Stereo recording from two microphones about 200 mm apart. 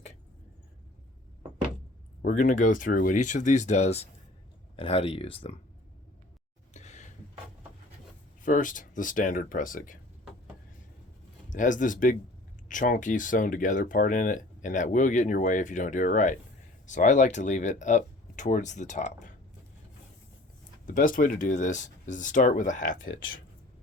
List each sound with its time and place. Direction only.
2.2 s speech: 40° left (ahead or behind)
6.7 s a sound: 35° left (ahead or behind)
8.4 s speech: 40° left (ahead or behind)
11.4 s speech: 40° left (ahead or behind)
20.8 s speech: 40° left (ahead or behind)